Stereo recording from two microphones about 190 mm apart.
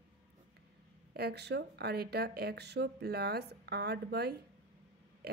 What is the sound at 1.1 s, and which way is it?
A woman's voice, 60° right (ahead or behind).